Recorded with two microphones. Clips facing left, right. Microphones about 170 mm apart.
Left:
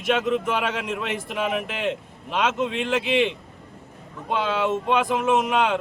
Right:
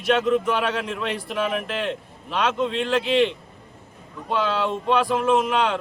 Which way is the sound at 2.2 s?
15° left (ahead or behind).